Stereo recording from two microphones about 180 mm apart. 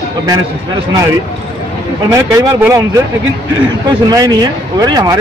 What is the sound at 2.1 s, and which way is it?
Speech, 15° right (ahead or behind).